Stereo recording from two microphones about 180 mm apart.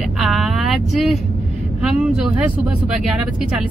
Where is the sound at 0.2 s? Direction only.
Centre (ahead or behind).